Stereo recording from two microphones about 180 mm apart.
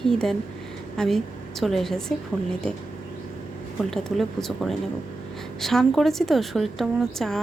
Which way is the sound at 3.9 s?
Centre (ahead or behind).